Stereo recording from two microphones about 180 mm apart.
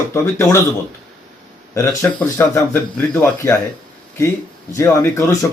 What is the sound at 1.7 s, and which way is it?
A man's voice, 15° left (ahead or behind).